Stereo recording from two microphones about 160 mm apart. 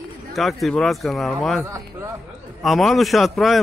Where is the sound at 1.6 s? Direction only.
15° right (ahead or behind).